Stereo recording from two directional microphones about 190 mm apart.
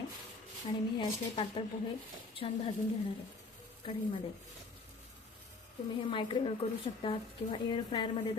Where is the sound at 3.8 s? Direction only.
25° left (ahead or behind).